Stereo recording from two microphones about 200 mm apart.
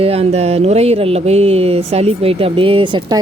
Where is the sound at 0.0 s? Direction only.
30° right (ahead or behind).